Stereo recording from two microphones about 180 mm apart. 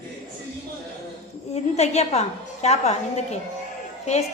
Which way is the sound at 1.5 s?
35° left (ahead or behind).